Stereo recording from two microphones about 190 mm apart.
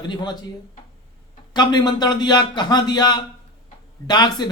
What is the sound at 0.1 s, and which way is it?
Speech, 20° left (ahead or behind).